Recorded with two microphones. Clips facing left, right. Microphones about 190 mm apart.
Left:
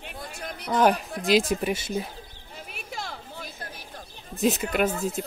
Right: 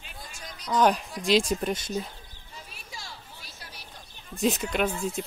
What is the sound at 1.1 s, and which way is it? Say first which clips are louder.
Speech: left 3 dB; 60° left (ahead or behind).